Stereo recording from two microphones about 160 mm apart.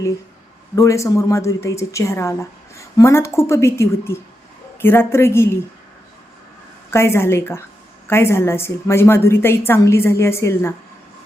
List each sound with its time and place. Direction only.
0.8 s a woman's voice: 20° left (ahead or behind)
6.9 s a woman's voice: 15° left (ahead or behind)